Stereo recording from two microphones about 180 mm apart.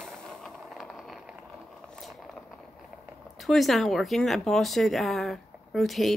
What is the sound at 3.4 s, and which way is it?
Speech, centre (ahead or behind).